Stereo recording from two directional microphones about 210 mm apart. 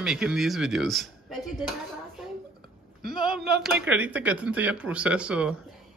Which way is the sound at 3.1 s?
Centre (ahead or behind).